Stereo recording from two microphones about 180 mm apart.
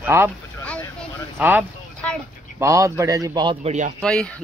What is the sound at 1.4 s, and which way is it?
Speech, 10° right (ahead or behind).